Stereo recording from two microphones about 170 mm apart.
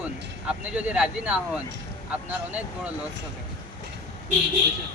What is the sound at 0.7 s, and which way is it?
Speech, 5° right (ahead or behind).